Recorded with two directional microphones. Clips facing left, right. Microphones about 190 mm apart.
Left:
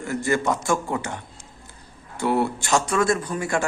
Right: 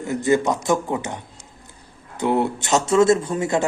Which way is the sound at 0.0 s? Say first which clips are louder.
Right 4 dB; 20° right (ahead or behind).